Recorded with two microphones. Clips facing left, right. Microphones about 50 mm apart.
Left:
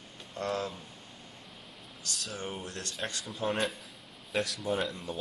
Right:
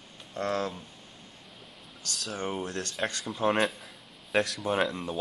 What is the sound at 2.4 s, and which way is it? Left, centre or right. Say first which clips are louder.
Speech: right 6 dB; right.